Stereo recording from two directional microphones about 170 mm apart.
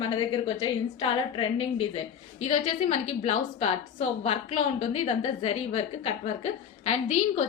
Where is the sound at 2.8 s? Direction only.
45° left (ahead or behind).